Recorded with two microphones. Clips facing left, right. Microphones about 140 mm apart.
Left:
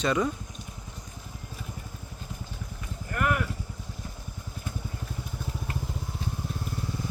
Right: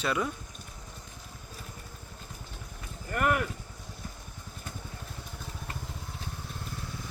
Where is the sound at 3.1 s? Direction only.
Centre (ahead or behind).